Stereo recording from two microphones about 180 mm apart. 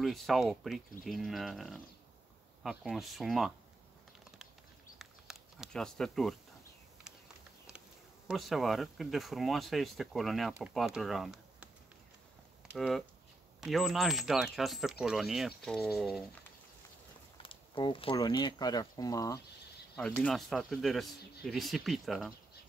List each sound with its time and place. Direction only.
0.0 s speech: centre (ahead or behind)
4.9 s a sound: centre (ahead or behind)
8.3 s speech: centre (ahead or behind)
12.7 s speech: centre (ahead or behind)
17.4 s speech: 30° left (ahead or behind)
20.0 s speech: 5° left (ahead or behind)